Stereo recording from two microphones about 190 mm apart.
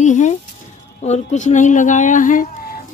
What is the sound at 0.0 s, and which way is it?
Speech, 40° left (ahead or behind).